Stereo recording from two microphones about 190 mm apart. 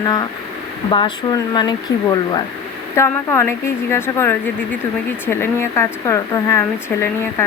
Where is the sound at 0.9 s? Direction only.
25° left (ahead or behind).